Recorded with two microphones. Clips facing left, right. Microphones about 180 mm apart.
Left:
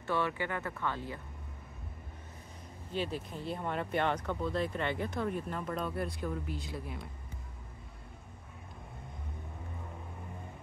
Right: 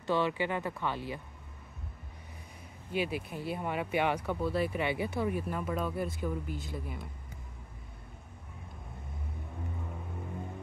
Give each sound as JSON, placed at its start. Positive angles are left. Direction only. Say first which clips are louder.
{"t": 0.0, "sound": "speech", "louder": "right 3 dB", "side_deg": -15}
{"t": 2.9, "sound": "speech", "louder": "right 3 dB", "side_deg": -10}